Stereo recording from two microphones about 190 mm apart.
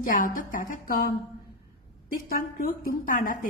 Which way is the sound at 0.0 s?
45° left (ahead or behind).